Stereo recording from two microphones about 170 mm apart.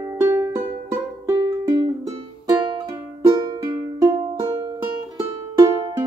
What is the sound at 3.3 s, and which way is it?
Music, 20° right (ahead or behind).